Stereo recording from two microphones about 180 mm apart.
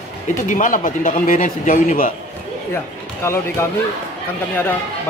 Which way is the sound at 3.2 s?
15° left (ahead or behind).